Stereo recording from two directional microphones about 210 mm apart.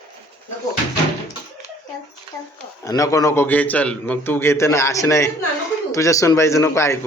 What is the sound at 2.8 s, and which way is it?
A man's voice, 15° left (ahead or behind).